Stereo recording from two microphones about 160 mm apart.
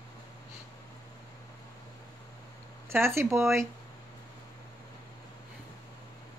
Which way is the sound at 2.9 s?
15° right (ahead or behind).